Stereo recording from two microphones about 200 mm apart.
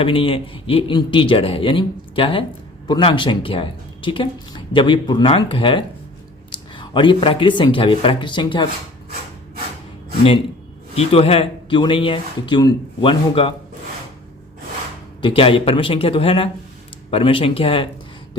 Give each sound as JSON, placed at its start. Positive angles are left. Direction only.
{"t": 0.0, "sound": "speech", "side_deg": 25}
{"t": 10.9, "sound": "speech", "side_deg": 30}
{"t": 15.2, "sound": "speech", "side_deg": 25}